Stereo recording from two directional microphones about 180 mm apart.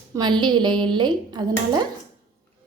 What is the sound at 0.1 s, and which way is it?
A woman's voice, 25° right (ahead or behind).